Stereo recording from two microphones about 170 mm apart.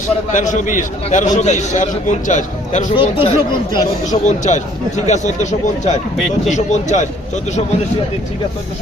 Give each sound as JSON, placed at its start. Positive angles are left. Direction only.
{"t": 0.3, "sound": "a man's voice", "side_deg": 50}
{"t": 2.9, "sound": "speech", "side_deg": 30}
{"t": 4.0, "sound": "a man's voice", "side_deg": 45}